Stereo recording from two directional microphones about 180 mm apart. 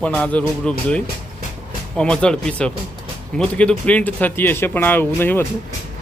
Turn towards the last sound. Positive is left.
turn(degrees=10)  # may be behind; listen again after turning